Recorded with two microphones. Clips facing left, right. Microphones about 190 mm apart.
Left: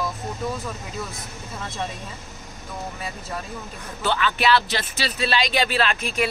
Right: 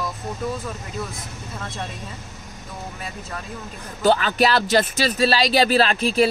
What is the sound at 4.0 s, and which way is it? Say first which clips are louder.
Speech: right 6 dB; 40° right (ahead or behind).